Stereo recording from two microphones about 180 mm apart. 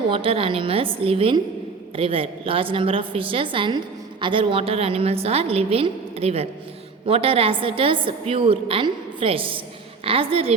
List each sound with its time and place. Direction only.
0.1 s a woman's voice: 30° right (ahead or behind)